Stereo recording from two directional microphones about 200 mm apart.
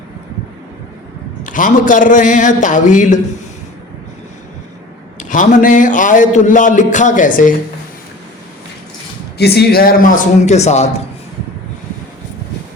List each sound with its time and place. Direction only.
1.5 s speech: 40° left (ahead or behind)
5.3 s speech: 40° left (ahead or behind)
9.4 s speech: 55° left (ahead or behind); by 11.0 s 35° left (ahead or behind)